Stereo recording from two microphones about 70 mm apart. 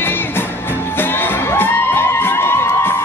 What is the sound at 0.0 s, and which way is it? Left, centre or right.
Music, left.